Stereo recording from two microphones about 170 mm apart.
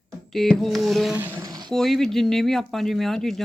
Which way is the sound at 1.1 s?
15° right (ahead or behind).